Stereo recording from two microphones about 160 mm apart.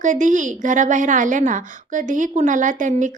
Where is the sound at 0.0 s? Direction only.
50° right (ahead or behind).